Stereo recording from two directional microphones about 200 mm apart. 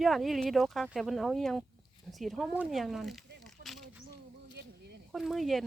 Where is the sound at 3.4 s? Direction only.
Centre (ahead or behind).